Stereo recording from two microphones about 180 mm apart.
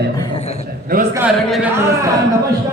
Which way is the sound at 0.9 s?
55° right (ahead or behind).